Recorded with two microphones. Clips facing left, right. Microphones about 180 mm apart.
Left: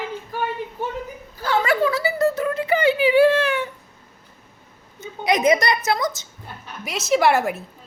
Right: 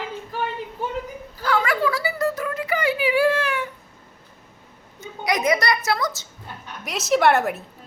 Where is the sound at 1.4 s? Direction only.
25° left (ahead or behind).